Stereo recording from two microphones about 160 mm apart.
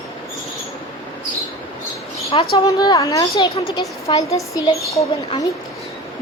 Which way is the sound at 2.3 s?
35° left (ahead or behind).